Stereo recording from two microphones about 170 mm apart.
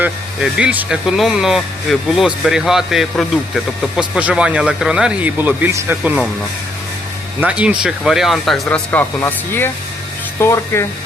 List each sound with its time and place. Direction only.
0.5 s speech: 10° right (ahead or behind)
7.4 s speech: 5° right (ahead or behind); by 10.8 s 15° left (ahead or behind)